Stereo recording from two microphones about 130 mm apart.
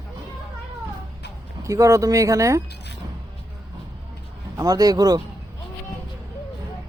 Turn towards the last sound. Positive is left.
turn(degrees=-30)  # may be behind; listen again after turning